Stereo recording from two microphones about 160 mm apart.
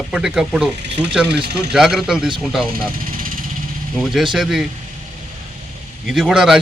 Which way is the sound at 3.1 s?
60° right (ahead or behind).